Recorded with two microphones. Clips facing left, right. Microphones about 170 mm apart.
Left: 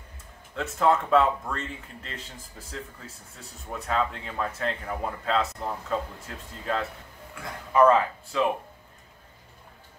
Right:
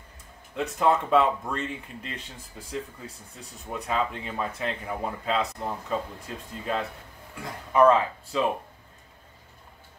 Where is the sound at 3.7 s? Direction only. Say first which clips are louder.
Even; 15° right (ahead or behind).